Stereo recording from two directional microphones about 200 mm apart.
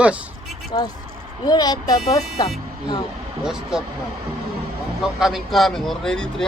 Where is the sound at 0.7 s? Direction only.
20° left (ahead or behind).